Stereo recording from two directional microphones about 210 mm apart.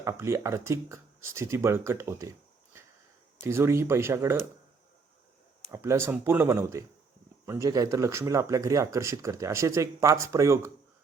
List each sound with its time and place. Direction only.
0.0 s speech: 15° right (ahead or behind)
3.4 s speech: 10° right (ahead or behind)
5.7 s speech: 15° right (ahead or behind)